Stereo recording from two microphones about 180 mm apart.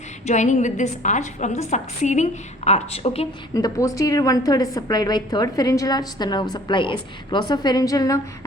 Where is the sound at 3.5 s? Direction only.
20° left (ahead or behind).